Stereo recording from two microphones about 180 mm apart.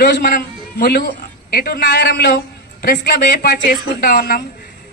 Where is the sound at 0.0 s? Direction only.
60° left (ahead or behind).